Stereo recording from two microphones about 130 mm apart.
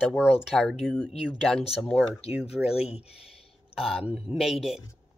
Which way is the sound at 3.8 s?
5° right (ahead or behind).